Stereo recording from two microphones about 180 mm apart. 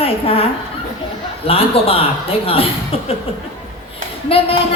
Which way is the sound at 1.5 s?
30° left (ahead or behind).